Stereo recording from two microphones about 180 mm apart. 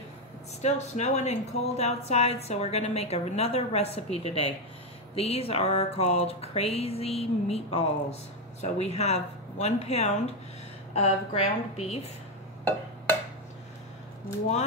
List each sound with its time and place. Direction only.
0.6 s speech: 40° left (ahead or behind)